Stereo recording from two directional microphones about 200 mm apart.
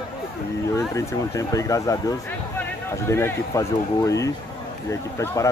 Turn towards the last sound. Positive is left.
turn(degrees=15)  # may be behind; listen again after turning